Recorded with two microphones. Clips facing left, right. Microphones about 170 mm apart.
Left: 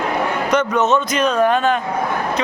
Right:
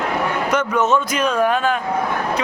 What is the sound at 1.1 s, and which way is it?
Speech, 10° right (ahead or behind).